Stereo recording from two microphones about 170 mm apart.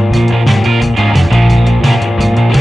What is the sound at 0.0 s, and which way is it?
Music, centre (ahead or behind).